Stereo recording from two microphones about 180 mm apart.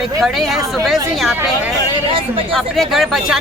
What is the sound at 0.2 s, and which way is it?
Speech, centre (ahead or behind).